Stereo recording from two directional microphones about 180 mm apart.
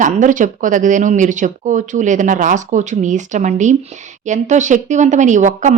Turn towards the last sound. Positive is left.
turn(degrees=-45)  # may be behind; listen again after turning